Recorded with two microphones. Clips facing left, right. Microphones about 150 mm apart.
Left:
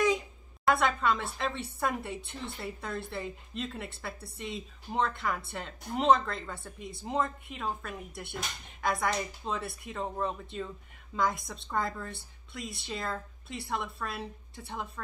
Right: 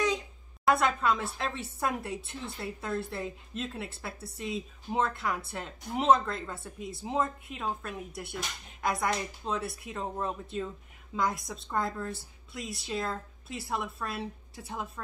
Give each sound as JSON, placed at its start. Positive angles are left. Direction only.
{"t": 0.7, "sound": "a woman's voice", "side_deg": 0}